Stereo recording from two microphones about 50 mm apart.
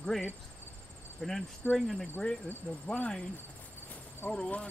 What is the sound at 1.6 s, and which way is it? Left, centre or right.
Speech, left.